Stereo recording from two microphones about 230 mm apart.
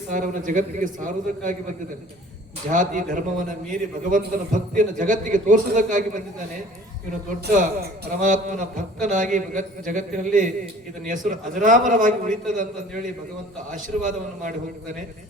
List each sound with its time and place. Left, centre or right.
0.1 s a man's voice: right
13.7 s a man's voice: right